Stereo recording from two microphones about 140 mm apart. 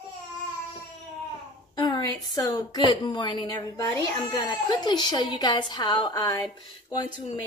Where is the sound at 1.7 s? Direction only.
30° left (ahead or behind).